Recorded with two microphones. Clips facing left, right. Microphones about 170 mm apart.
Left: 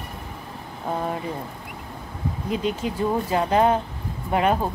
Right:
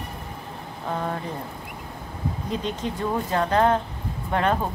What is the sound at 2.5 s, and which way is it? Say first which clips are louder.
Speech: left 4 dB; 10° left (ahead or behind).